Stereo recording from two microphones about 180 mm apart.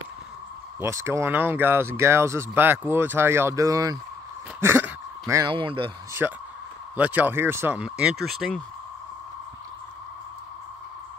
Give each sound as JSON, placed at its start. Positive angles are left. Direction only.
{"t": 0.7, "sound": "speech", "side_deg": -15}
{"t": 4.6, "sound": "a sound", "side_deg": -15}
{"t": 6.2, "sound": "speech", "side_deg": -5}